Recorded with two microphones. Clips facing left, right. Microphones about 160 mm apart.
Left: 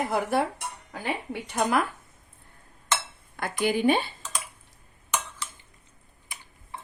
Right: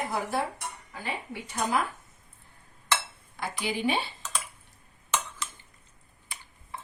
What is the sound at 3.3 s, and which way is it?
Speech, 55° left (ahead or behind).